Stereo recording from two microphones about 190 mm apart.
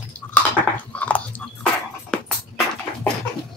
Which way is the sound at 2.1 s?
5° left (ahead or behind).